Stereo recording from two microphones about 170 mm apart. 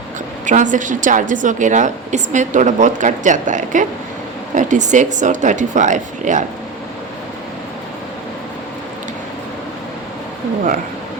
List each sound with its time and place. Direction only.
0.4 s a woman's voice: 50° right (ahead or behind)